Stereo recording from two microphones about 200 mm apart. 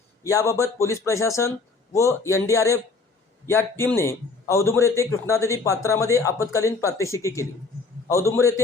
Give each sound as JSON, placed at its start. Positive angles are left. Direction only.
{"t": 0.2, "sound": "a man's voice", "side_deg": 15}